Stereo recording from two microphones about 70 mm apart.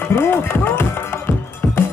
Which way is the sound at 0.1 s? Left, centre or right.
Left.